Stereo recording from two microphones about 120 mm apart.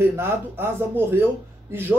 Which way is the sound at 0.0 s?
20° right (ahead or behind).